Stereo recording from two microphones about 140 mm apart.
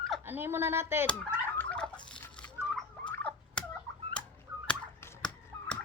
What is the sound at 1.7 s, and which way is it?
Fowl, 10° left (ahead or behind).